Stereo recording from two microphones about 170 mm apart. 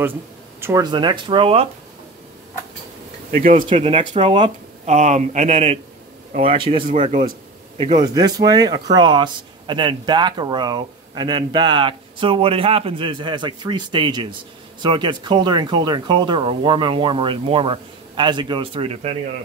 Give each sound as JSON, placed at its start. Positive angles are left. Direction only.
{"t": 0.6, "sound": "speech", "side_deg": -15}
{"t": 3.3, "sound": "speech", "side_deg": -50}
{"t": 3.6, "sound": "speech", "side_deg": -30}
{"t": 6.9, "sound": "speech", "side_deg": -45}
{"t": 7.7, "sound": "speech", "side_deg": -30}